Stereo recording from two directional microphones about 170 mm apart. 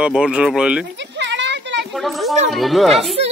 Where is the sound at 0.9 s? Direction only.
90° right.